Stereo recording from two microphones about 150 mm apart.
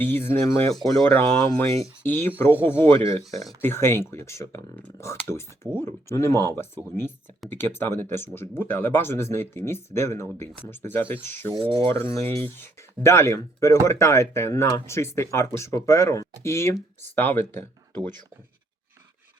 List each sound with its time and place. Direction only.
0.0 s speech: 15° left (ahead or behind)
0.7 s speech: centre (ahead or behind)
1.0 s speech: 15° left (ahead or behind)
11.6 s speech: 35° right (ahead or behind)
12.1 s speech: 20° left (ahead or behind)